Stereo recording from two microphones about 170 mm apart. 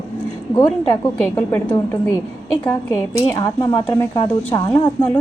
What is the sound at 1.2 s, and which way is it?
Speech, 10° left (ahead or behind).